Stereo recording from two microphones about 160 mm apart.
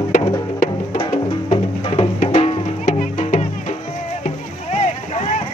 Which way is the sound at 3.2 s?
45° left (ahead or behind).